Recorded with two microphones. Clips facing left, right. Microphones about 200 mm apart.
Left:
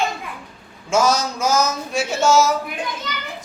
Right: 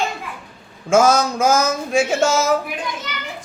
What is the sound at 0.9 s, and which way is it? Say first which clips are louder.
Speech: right 4 dB; 50° right (ahead or behind).